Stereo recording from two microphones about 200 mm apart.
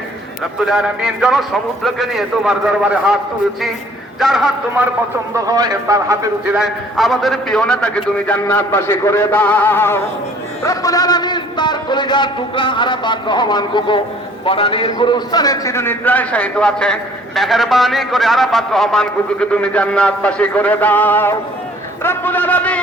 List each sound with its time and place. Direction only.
0.6 s a man's voice: centre (ahead or behind)
4.2 s a man's voice: centre (ahead or behind)
5.3 s a man's voice: 20° right (ahead or behind)
6.5 s a man's voice: centre (ahead or behind)